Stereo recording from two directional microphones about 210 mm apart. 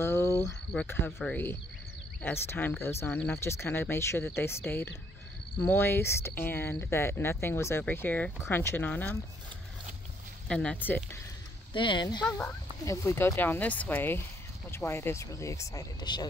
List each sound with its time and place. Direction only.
0.0 s a sound: 10° left (ahead or behind)
0.4 s speech: 10° left (ahead or behind)
10.5 s speech: 5° left (ahead or behind)
11.7 s speech: 25° left (ahead or behind)
12.3 s speech: 10° left (ahead or behind)